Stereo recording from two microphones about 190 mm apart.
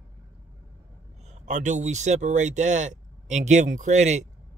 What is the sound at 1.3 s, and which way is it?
Speech, 40° right (ahead or behind).